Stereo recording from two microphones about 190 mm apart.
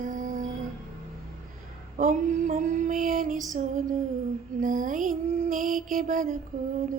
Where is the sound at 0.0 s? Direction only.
45° right (ahead or behind).